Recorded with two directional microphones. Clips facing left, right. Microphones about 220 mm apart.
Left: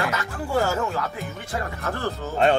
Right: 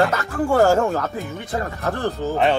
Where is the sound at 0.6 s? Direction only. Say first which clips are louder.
Right 6 dB; 50° right (ahead or behind).